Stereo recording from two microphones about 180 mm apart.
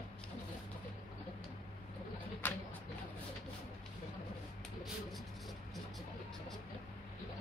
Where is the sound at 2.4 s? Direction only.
10° left (ahead or behind).